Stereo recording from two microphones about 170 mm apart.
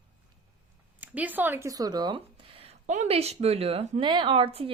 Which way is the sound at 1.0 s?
10° right (ahead or behind).